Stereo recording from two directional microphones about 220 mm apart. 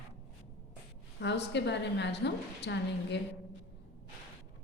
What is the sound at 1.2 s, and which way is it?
A woman's voice, 50° left (ahead or behind).